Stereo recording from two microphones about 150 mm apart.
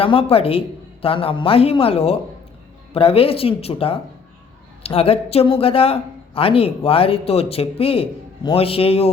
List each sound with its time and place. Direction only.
0.0 s a woman's voice: 40° left (ahead or behind)